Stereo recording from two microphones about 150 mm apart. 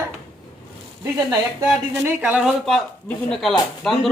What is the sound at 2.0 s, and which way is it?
Speech, 10° right (ahead or behind).